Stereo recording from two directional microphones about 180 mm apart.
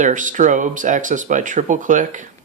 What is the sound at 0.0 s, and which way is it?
Speech, 45° right (ahead or behind).